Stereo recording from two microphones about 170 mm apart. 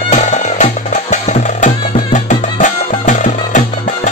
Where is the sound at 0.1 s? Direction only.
45° left (ahead or behind).